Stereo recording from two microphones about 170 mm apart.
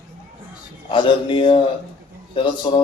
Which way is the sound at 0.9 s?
30° left (ahead or behind).